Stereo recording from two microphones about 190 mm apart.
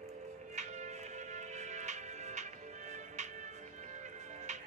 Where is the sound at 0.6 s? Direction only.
40° right (ahead or behind).